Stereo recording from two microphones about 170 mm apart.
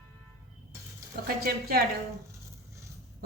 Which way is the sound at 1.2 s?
60° right (ahead or behind).